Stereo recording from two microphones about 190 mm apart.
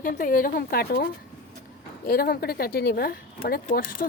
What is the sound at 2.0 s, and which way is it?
Speech, 50° left (ahead or behind).